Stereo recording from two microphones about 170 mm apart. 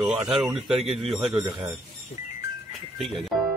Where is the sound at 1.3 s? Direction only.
15° right (ahead or behind).